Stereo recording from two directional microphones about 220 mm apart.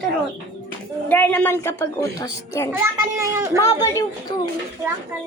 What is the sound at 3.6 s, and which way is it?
Speech, 15° left (ahead or behind).